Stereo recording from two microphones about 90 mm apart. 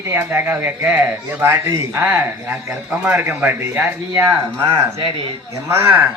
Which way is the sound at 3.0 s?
15° right (ahead or behind).